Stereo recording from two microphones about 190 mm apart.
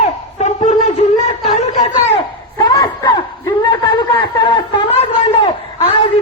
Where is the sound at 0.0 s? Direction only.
35° left (ahead or behind).